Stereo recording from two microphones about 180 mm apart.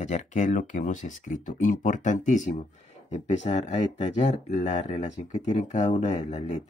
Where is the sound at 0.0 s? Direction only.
40° left (ahead or behind).